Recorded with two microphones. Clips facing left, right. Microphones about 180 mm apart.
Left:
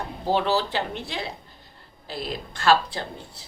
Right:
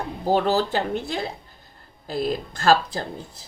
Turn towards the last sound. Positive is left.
turn(degrees=-40)  # may be behind; listen again after turning